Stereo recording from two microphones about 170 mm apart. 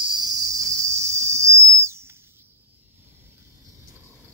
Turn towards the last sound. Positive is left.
turn(degrees=-15)  # may be behind; listen again after turning